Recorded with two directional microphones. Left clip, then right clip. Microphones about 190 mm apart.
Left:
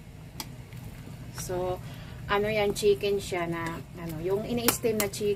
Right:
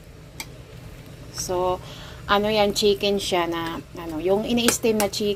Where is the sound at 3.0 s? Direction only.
40° right (ahead or behind).